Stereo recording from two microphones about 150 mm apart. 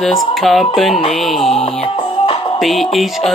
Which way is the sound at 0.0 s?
Centre (ahead or behind).